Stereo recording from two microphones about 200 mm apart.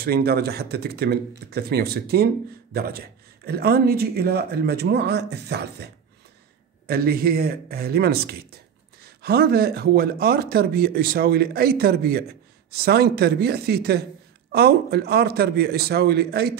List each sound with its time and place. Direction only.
0.0 s speech: 50° right (ahead or behind)
6.9 s speech: 50° right (ahead or behind)